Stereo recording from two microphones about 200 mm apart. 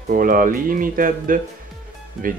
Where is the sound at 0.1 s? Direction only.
45° right (ahead or behind).